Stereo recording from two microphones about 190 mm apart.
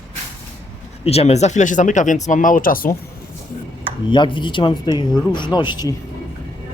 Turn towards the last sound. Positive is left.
turn(degrees=20)  # may be behind; listen again after turning